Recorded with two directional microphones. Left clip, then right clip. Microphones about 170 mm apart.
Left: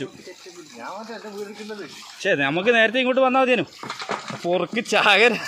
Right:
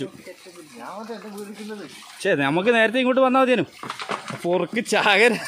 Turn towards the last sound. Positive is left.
turn(degrees=-25)  # may be behind; listen again after turning